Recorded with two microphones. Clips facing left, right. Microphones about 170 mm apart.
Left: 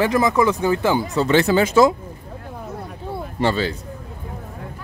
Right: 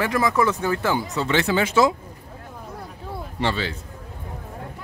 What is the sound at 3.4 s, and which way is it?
Speech, 40° left (ahead or behind).